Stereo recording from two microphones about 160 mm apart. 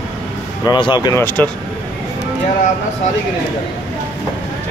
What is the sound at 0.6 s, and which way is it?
Speech, 30° left (ahead or behind).